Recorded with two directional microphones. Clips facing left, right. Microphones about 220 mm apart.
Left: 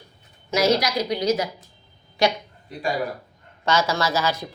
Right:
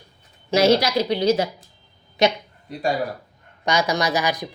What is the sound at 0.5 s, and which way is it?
A woman's voice, 30° right (ahead or behind).